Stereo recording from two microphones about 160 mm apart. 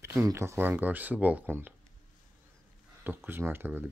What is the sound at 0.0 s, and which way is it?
Speech, 20° right (ahead or behind).